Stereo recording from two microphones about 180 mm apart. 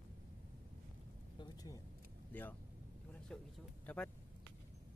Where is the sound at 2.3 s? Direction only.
10° left (ahead or behind).